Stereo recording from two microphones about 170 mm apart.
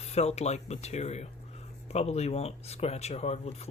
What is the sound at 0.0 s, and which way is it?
Speech, 40° left (ahead or behind).